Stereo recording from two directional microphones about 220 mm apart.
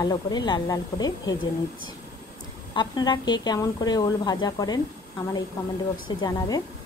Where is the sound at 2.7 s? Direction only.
20° left (ahead or behind).